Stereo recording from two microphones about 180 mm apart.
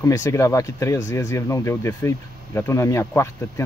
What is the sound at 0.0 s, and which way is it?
Speech, 15° left (ahead or behind).